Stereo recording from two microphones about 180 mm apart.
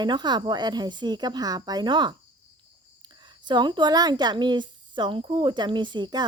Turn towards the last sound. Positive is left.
turn(degrees=-25)  # may be behind; listen again after turning